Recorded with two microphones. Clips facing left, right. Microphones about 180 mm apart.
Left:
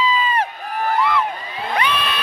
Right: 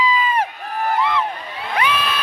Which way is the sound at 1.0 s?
20° right (ahead or behind).